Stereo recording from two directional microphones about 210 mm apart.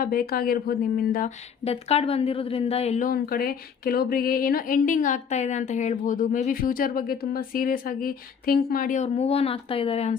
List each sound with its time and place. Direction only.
0.0 s speech: 45° left (ahead or behind)
1.6 s a woman's voice: 30° left (ahead or behind)